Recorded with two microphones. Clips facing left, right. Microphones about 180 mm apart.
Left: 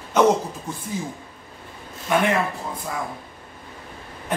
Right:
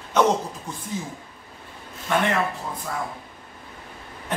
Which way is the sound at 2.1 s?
10° left (ahead or behind).